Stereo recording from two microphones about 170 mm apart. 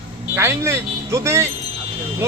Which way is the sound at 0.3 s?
15° right (ahead or behind).